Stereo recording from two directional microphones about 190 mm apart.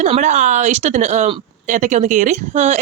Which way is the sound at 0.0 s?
40° right (ahead or behind).